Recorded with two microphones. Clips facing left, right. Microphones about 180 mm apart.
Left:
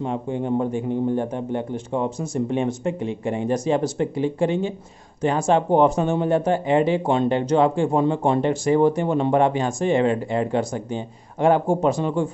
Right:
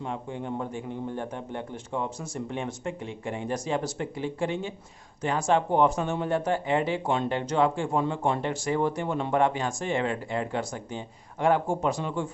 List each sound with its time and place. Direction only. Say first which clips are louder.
0.0 s speech: left 8 dB; 25° left (ahead or behind)